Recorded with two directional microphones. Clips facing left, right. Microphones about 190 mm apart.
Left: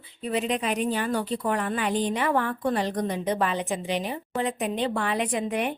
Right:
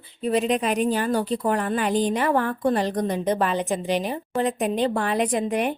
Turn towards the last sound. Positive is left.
turn(degrees=-40)  # may be behind; listen again after turning